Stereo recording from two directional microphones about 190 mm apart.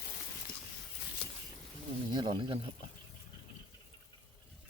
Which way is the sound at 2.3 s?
25° right (ahead or behind).